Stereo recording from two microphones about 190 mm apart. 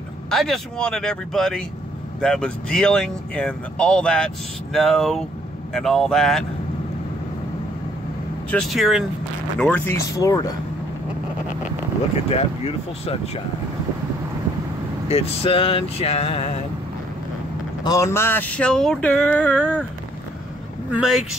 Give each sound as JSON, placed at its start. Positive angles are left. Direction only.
{"t": 0.3, "sound": "speech", "side_deg": 0}
{"t": 8.5, "sound": "speech", "side_deg": 0}
{"t": 12.3, "sound": "a sound", "side_deg": 30}
{"t": 15.0, "sound": "a sound", "side_deg": 30}
{"t": 17.8, "sound": "speech", "side_deg": 15}
{"t": 20.9, "sound": "speech", "side_deg": -5}